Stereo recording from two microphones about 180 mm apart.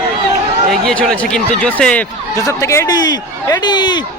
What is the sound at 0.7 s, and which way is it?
Speech, 5° left (ahead or behind).